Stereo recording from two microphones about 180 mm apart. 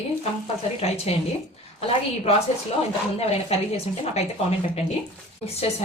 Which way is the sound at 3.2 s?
35° left (ahead or behind).